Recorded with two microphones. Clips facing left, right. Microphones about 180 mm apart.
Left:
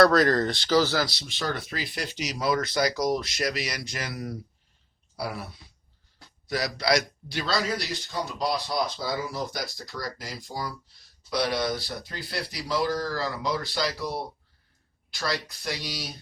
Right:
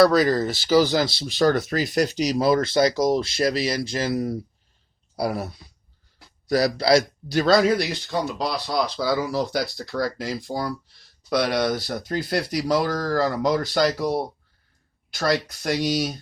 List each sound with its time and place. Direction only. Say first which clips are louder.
0.0 s speech: right 2 dB; centre (ahead or behind); by 4.4 s 25° right (ahead or behind)
5.1 s a man's voice: right 8 dB; 40° right (ahead or behind)
6.5 s a man's voice: right 7 dB; 35° right (ahead or behind)
7.3 s speech: right 10 dB; 50° right (ahead or behind)
8.4 s speech: right 3 dB; 80° right; by 16.1 s 45° right (ahead or behind)